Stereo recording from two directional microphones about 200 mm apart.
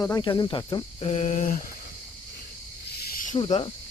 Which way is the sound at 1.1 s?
35° left (ahead or behind).